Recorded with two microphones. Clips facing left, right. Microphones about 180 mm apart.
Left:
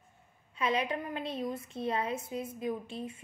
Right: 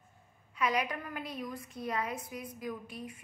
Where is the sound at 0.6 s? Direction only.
25° left (ahead or behind).